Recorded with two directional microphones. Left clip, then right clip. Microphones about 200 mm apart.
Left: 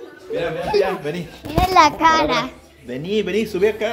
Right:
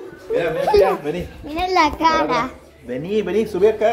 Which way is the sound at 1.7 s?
10° left (ahead or behind).